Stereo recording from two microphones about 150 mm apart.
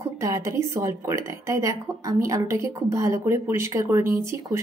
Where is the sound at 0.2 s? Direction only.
20° right (ahead or behind).